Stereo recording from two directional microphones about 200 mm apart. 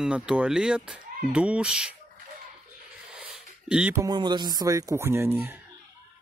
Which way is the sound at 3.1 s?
5° right (ahead or behind).